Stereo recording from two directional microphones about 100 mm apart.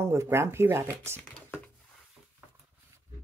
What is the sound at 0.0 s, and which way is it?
Speech, 25° right (ahead or behind).